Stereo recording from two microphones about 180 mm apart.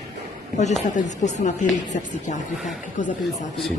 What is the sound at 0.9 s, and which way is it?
A woman's voice, 40° left (ahead or behind).